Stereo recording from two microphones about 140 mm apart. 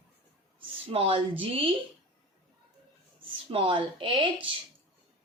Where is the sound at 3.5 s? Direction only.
40° right (ahead or behind).